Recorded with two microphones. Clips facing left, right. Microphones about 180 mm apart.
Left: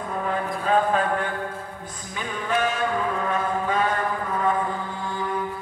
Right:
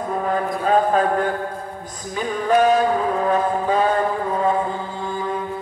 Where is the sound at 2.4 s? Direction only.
40° right (ahead or behind).